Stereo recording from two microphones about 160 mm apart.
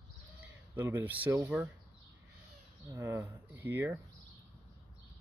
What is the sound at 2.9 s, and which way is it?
Speech, 15° right (ahead or behind).